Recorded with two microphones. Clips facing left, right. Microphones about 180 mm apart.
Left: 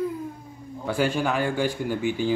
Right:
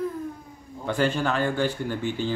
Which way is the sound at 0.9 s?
10° left (ahead or behind).